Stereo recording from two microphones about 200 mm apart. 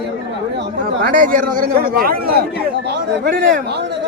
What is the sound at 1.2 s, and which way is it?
Speech, 45° right (ahead or behind).